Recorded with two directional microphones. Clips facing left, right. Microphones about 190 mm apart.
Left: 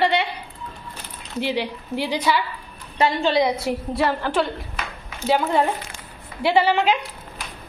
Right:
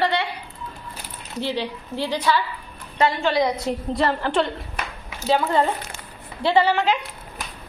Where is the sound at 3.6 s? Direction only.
5° left (ahead or behind).